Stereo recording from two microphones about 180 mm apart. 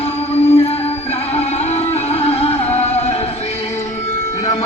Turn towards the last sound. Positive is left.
turn(degrees=40)  # may be behind; listen again after turning